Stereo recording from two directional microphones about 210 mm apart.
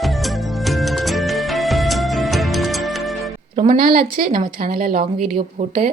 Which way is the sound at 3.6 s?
40° right (ahead or behind).